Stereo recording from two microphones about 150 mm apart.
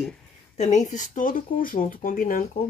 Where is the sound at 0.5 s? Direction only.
50° left (ahead or behind).